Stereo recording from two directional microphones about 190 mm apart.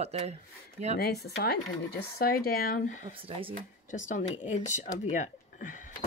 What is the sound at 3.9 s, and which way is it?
Speech, 40° left (ahead or behind).